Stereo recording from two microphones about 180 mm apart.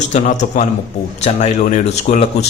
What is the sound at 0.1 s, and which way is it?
A man's voice, 45° left (ahead or behind).